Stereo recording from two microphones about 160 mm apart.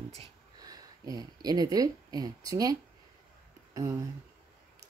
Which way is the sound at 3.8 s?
20° right (ahead or behind).